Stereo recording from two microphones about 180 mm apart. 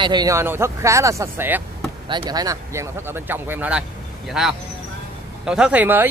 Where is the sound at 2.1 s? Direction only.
25° right (ahead or behind).